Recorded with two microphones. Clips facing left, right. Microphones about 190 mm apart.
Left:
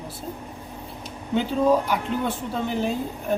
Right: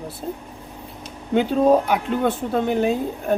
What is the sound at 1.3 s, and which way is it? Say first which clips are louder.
Speech: right 4 dB; 55° right (ahead or behind).